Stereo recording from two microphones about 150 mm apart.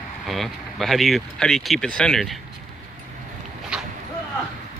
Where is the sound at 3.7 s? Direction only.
5° right (ahead or behind).